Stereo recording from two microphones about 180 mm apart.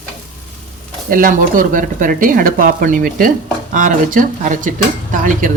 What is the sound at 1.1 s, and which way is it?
Speech, 50° right (ahead or behind).